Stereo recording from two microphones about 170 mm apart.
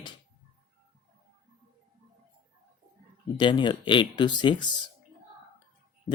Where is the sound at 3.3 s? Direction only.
25° left (ahead or behind).